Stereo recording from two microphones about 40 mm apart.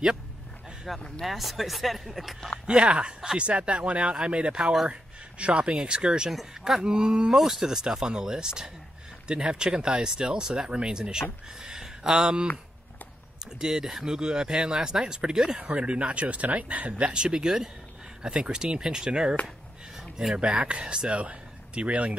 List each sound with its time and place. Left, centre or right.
0.9 s speech: centre
2.6 s speech: right
7.3 s speech: centre
13.6 s speech: centre
15.7 s speech: right
17.0 s speech: right
20.0 s a sound: centre
20.3 s speech: right